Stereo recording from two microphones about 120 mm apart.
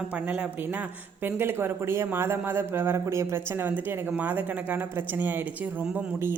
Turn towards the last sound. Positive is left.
turn(degrees=-15)  # may be behind; listen again after turning